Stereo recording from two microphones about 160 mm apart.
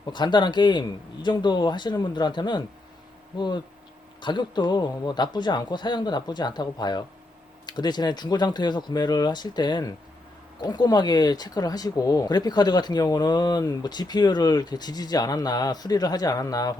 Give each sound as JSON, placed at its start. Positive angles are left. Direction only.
{"t": 0.1, "sound": "speech", "side_deg": 30}